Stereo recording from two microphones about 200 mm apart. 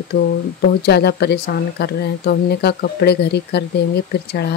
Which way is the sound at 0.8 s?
55° left (ahead or behind).